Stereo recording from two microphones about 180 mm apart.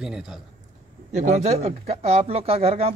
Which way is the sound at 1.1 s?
40° right (ahead or behind).